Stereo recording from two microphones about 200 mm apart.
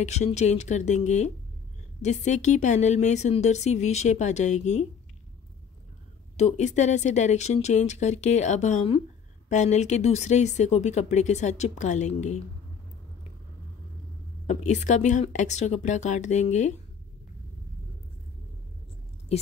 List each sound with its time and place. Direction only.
0.0 s speech: 35° left (ahead or behind)
6.3 s speech: 35° left (ahead or behind)
14.4 s speech: 35° left (ahead or behind)